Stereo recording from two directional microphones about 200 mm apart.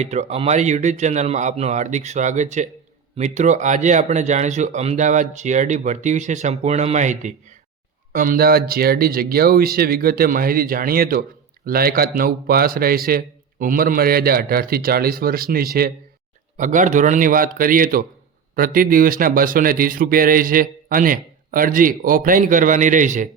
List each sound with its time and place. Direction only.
0.0 s speech: 35° right (ahead or behind)